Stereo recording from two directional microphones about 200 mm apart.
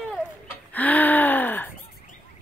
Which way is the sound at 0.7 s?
10° left (ahead or behind).